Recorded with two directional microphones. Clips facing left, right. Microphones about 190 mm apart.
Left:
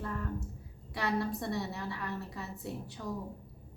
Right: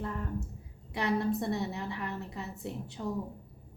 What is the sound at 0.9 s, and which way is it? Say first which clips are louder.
A woman's voice: right 3 dB; 20° right (ahead or behind).